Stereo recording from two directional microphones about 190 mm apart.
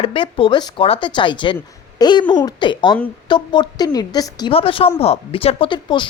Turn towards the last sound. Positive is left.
turn(degrees=25)  # may be behind; listen again after turning